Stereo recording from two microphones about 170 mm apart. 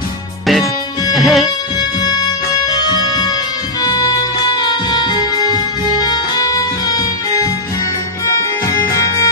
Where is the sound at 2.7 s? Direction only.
25° left (ahead or behind).